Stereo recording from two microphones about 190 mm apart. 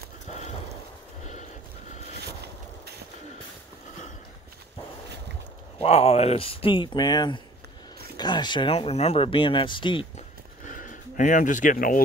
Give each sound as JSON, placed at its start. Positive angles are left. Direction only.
{"t": 0.3, "sound": "a sound", "side_deg": 35}
{"t": 5.8, "sound": "speech", "side_deg": 35}
{"t": 10.7, "sound": "speech", "side_deg": 45}